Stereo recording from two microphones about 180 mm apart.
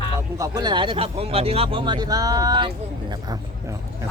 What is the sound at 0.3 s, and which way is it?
Speech, 20° right (ahead or behind).